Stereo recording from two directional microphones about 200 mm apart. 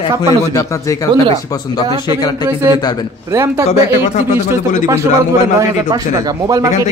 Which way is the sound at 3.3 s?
15° right (ahead or behind).